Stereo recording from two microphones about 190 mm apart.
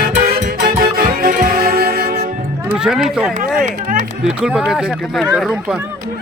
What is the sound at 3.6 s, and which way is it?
Music, 40° right (ahead or behind).